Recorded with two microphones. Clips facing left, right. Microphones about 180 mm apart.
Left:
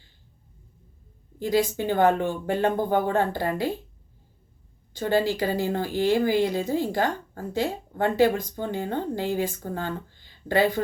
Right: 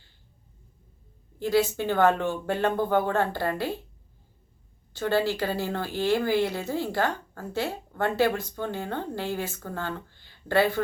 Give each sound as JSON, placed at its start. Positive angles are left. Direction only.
{"t": 1.4, "sound": "speech", "side_deg": 15}
{"t": 4.9, "sound": "speech", "side_deg": 15}